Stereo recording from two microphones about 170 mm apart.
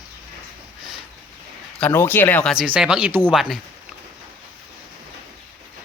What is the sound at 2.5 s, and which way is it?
Speech, 5° right (ahead or behind).